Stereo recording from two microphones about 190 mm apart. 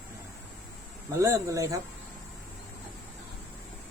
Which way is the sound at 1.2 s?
15° right (ahead or behind).